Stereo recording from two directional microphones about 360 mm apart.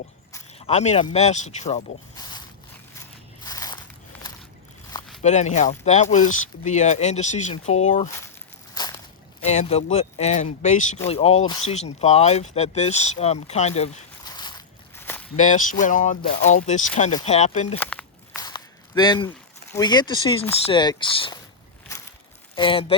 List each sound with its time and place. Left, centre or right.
0.3 s speech: centre
3.4 s biting: centre
5.2 s speech: centre
8.7 s a sound: centre
9.4 s speech: centre
14.9 s walk: centre
15.4 s speech: left
17.7 s walk: centre
18.4 s a sound: centre
19.7 s speech: centre
22.5 s speech: centre